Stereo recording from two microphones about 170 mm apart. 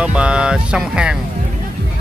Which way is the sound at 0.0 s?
5° right (ahead or behind).